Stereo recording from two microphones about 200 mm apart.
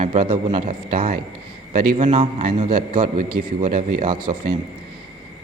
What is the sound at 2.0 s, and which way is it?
A man's voice, 30° right (ahead or behind).